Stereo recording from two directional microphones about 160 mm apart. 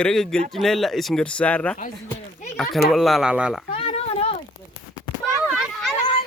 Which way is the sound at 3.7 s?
35° left (ahead or behind).